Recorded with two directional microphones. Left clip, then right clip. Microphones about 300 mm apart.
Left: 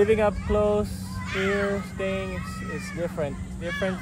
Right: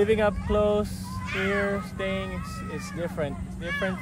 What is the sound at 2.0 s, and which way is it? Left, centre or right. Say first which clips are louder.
Speech: left 1 dB; centre.